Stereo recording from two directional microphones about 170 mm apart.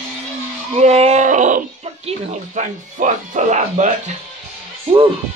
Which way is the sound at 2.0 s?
45° right (ahead or behind).